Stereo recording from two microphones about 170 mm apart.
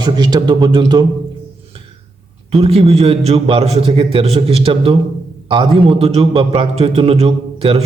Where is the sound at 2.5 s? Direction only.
35° right (ahead or behind).